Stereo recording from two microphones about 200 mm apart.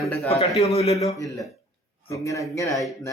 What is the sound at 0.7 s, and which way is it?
Speech, 30° left (ahead or behind).